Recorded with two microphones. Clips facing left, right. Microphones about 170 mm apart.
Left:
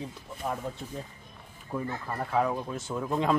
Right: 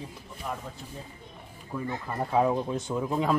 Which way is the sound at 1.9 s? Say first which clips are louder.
Right 5 dB; 20° right (ahead or behind).